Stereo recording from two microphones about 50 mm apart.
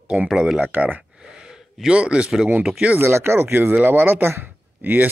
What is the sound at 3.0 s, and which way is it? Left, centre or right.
Speech, right.